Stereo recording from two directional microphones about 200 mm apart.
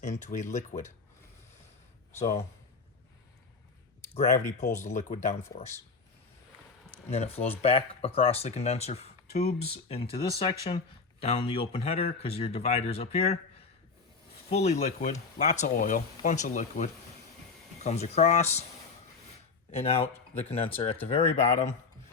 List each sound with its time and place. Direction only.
0.0 s speech: 35° left (ahead or behind)
2.1 s speech: 35° left (ahead or behind)
4.1 s speech: 35° left (ahead or behind)
6.9 s speech: 30° left (ahead or behind)
14.5 s speech: 35° left (ahead or behind)
19.7 s speech: 30° left (ahead or behind)